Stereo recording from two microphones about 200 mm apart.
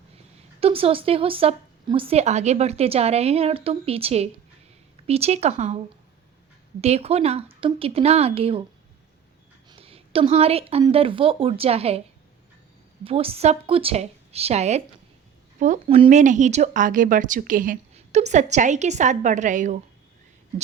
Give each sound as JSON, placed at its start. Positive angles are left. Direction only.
{"t": 0.6, "sound": "a woman's voice", "side_deg": -30}
{"t": 6.8, "sound": "speech", "side_deg": -30}
{"t": 9.6, "sound": "a woman's voice", "side_deg": -30}
{"t": 13.1, "sound": "speech", "side_deg": -30}